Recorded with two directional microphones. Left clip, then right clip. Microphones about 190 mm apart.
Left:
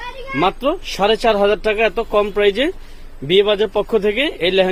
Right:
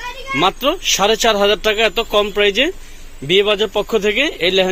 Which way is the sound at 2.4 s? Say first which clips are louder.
Right 1 dB; 20° left (ahead or behind).